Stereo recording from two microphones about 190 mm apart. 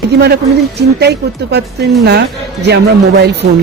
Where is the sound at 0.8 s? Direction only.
60° right (ahead or behind).